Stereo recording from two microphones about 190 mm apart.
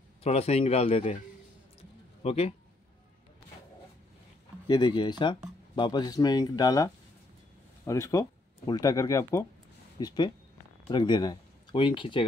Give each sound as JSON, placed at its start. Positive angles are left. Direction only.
{"t": 0.2, "sound": "a man's voice", "side_deg": 35}
{"t": 1.8, "sound": "a sound", "side_deg": 30}
{"t": 4.6, "sound": "speech", "side_deg": 25}